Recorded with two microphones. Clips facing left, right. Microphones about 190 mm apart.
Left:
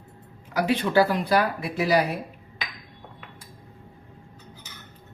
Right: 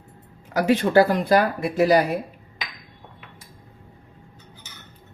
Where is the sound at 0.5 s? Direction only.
45° right (ahead or behind).